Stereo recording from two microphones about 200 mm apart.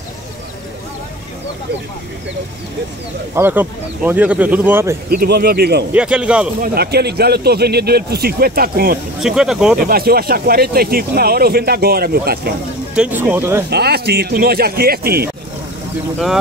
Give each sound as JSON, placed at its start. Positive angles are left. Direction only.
{"t": 3.3, "sound": "speech", "side_deg": -10}
{"t": 5.1, "sound": "speech", "side_deg": -50}
{"t": 5.9, "sound": "speech", "side_deg": -5}
{"t": 6.6, "sound": "speech", "side_deg": -50}
{"t": 9.2, "sound": "speech", "side_deg": -5}
{"t": 9.8, "sound": "speech", "side_deg": -50}
{"t": 12.9, "sound": "speech", "side_deg": -5}
{"t": 13.7, "sound": "speech", "side_deg": -55}